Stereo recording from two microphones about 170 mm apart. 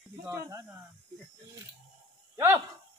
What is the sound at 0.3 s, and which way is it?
Speech, 15° right (ahead or behind).